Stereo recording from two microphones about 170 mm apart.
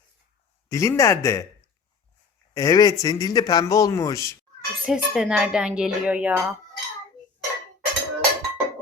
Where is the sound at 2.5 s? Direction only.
20° left (ahead or behind).